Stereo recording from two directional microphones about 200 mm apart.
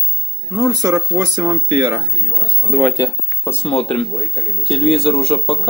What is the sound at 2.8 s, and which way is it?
Speech, 10° left (ahead or behind).